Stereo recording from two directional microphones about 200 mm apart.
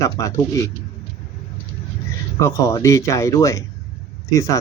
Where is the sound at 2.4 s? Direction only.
15° left (ahead or behind).